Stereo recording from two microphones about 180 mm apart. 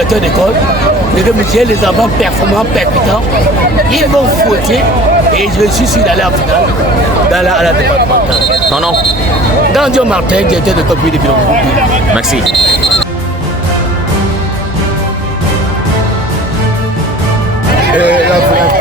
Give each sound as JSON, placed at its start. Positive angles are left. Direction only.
{"t": 1.5, "sound": "speech", "side_deg": 0}
{"t": 5.4, "sound": "speech", "side_deg": 0}
{"t": 7.3, "sound": "speech", "side_deg": 0}
{"t": 9.7, "sound": "speech", "side_deg": -5}
{"t": 12.1, "sound": "speech", "side_deg": 0}
{"t": 17.9, "sound": "speech", "side_deg": -10}